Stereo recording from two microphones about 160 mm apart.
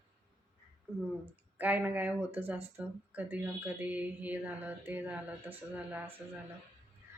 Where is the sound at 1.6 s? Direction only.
10° right (ahead or behind).